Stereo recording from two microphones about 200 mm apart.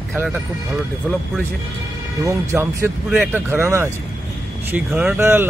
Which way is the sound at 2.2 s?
15° right (ahead or behind).